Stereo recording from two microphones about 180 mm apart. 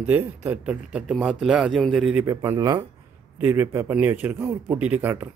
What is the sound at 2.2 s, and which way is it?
A man's voice, 15° right (ahead or behind).